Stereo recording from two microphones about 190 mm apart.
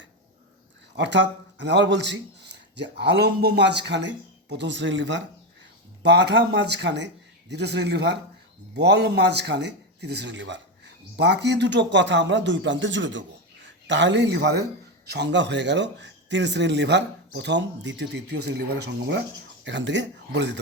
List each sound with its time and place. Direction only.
0.9 s a man's voice: 65° right (ahead or behind)